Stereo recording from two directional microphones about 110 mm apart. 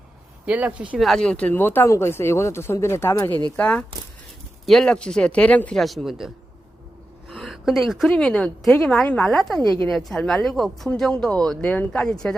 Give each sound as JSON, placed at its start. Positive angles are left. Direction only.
{"t": 0.4, "sound": "speech", "side_deg": -10}
{"t": 1.0, "sound": "speech", "side_deg": 5}
{"t": 3.6, "sound": "speech", "side_deg": 10}
{"t": 5.8, "sound": "speech", "side_deg": 0}
{"t": 7.4, "sound": "speech", "side_deg": -5}